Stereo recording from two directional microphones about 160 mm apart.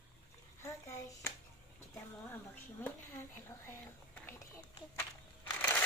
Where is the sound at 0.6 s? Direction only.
15° left (ahead or behind).